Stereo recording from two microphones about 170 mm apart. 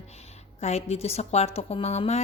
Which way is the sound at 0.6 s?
40° left (ahead or behind).